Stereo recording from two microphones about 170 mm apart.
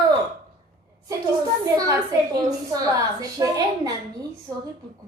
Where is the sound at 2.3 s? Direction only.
20° right (ahead or behind).